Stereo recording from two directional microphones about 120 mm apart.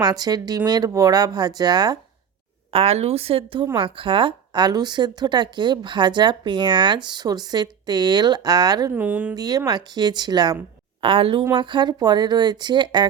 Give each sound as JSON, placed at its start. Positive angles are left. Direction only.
{"t": 0.0, "sound": "a woman's voice", "side_deg": -35}
{"t": 2.7, "sound": "a woman's voice", "side_deg": -60}
{"t": 9.0, "sound": "speech", "side_deg": -10}
{"t": 9.3, "sound": "a woman's voice", "side_deg": -35}
{"t": 11.0, "sound": "a woman's voice", "side_deg": -50}